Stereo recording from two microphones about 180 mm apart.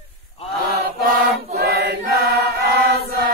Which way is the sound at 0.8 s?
55° right (ahead or behind).